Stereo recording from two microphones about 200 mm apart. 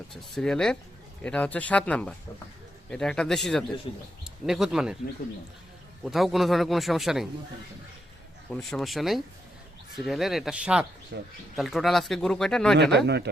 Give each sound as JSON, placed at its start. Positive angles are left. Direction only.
{"t": 0.1, "sound": "speech", "side_deg": 5}
{"t": 6.0, "sound": "speech", "side_deg": 0}
{"t": 8.4, "sound": "speech", "side_deg": 0}
{"t": 11.1, "sound": "speech", "side_deg": -60}
{"t": 11.5, "sound": "speech", "side_deg": 0}
{"t": 12.7, "sound": "speech", "side_deg": -55}